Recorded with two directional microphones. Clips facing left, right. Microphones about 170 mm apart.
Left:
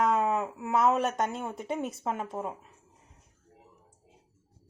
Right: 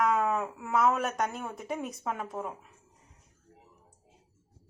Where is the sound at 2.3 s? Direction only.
25° left (ahead or behind).